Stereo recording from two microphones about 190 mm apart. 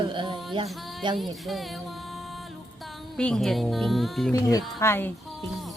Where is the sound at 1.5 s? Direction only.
Centre (ahead or behind).